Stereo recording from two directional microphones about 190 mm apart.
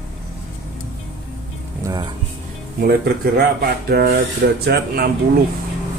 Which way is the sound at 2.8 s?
55° right (ahead or behind).